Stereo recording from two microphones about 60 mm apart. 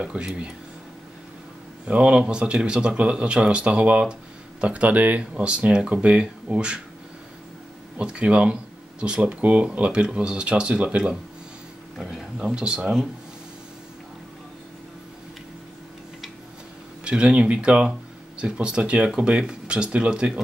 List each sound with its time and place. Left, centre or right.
0.0 s speech: centre
1.9 s speech: right
8.0 s speech: centre
12.0 s a sound: centre
12.4 s speech: centre
17.0 s speech: centre